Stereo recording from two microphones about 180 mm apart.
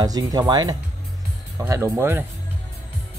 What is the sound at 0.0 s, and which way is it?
Speech, 20° right (ahead or behind).